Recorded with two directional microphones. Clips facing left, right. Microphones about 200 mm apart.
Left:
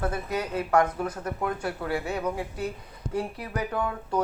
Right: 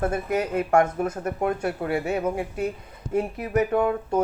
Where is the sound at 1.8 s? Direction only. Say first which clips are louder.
Right 3 dB; 25° right (ahead or behind).